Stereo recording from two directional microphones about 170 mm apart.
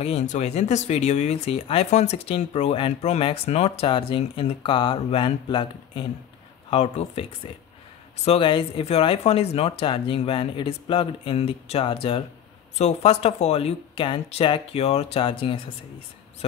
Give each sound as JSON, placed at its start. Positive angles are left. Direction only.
{"t": 0.0, "sound": "speech", "side_deg": 40}
{"t": 8.3, "sound": "speech", "side_deg": 30}